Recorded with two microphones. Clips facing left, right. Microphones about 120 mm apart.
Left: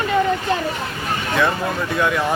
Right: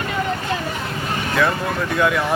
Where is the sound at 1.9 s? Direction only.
Centre (ahead or behind).